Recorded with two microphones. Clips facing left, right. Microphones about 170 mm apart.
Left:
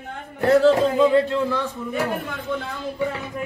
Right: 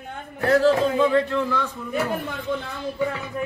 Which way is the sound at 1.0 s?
30° left (ahead or behind).